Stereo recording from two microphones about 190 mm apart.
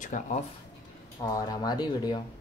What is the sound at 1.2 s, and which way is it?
Speech, 20° left (ahead or behind).